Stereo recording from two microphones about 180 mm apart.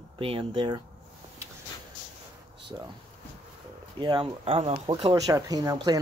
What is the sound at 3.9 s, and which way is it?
Speech, 25° right (ahead or behind).